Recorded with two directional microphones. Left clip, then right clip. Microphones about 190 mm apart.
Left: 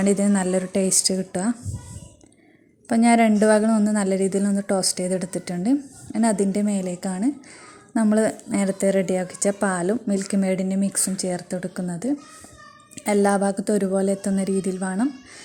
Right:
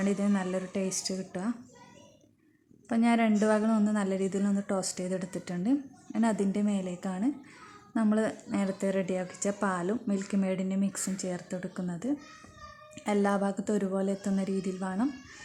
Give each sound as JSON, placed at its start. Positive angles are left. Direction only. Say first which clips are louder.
{"t": 0.0, "sound": "a woman's voice", "louder": "left 9 dB", "side_deg": 25}
{"t": 2.9, "sound": "a woman's voice", "louder": "left 9 dB", "side_deg": 25}